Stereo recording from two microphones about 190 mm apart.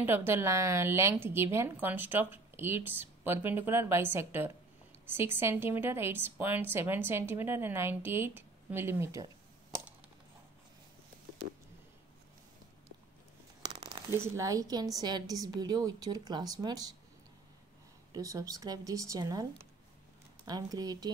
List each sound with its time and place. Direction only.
0.0 s a woman's voice: 10° right (ahead or behind)
13.6 s speech: 20° right (ahead or behind)
18.1 s a woman's voice: 15° right (ahead or behind)
20.4 s speech: 20° right (ahead or behind)